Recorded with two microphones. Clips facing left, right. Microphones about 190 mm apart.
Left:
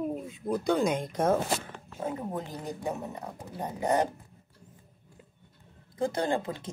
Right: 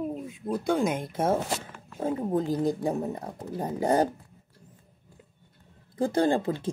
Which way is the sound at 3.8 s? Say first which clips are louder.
Right 3 dB; 35° right (ahead or behind).